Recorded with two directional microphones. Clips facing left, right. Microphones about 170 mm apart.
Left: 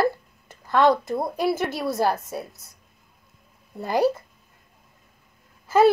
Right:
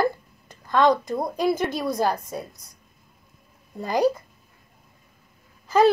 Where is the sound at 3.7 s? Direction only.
5° left (ahead or behind).